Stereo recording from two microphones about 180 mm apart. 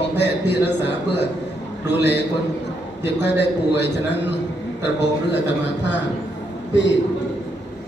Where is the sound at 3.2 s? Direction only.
75° left (ahead or behind).